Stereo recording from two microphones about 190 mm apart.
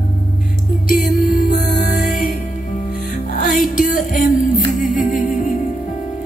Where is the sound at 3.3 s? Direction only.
45° left (ahead or behind).